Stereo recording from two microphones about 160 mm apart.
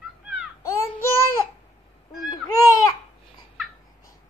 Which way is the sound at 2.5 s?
20° left (ahead or behind).